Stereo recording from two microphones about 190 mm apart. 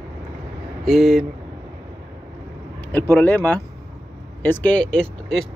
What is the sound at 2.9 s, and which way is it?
Speech, 10° left (ahead or behind).